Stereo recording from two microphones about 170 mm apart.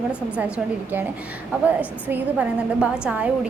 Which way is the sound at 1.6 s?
10° right (ahead or behind).